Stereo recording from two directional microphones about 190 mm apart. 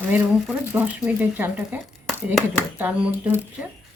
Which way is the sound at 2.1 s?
Centre (ahead or behind).